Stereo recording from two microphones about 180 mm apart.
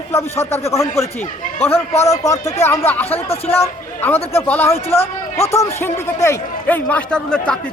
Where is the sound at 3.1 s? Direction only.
35° left (ahead or behind).